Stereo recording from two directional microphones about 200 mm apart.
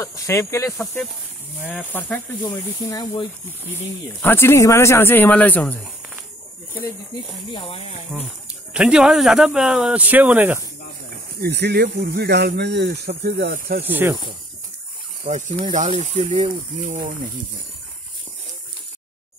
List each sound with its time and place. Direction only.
0.0 s speech: 15° left (ahead or behind)
7.4 s speech: 25° left (ahead or behind)
8.1 s speech: 5° left (ahead or behind)
11.4 s speech: 55° right (ahead or behind)
13.8 s speech: 10° right (ahead or behind)
15.2 s speech: 35° right (ahead or behind)